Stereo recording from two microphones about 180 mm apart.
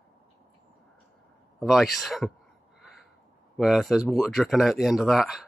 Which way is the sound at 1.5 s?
Centre (ahead or behind).